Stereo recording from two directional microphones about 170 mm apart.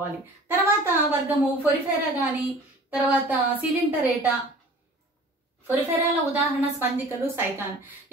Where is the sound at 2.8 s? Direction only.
10° right (ahead or behind).